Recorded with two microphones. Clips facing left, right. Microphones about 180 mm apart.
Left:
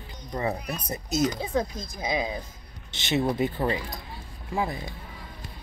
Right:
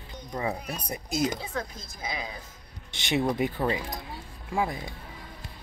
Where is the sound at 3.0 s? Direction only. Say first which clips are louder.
Left 1 dB; 15° right (ahead or behind).